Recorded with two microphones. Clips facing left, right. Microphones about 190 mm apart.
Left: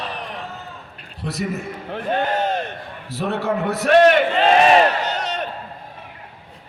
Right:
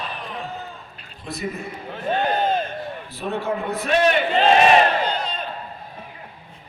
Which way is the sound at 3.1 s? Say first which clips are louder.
Left 4 dB; 80° left.